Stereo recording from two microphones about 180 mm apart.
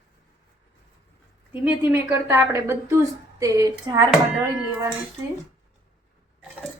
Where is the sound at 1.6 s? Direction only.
10° right (ahead or behind).